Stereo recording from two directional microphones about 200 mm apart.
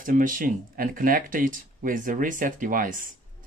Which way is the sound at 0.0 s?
40° right (ahead or behind).